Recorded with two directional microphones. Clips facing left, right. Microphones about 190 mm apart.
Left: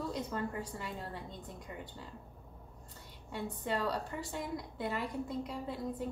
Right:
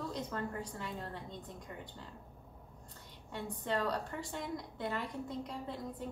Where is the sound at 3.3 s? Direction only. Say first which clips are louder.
Left 1 dB; 5° left (ahead or behind).